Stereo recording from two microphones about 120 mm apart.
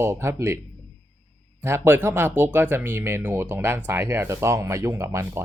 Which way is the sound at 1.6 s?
20° right (ahead or behind).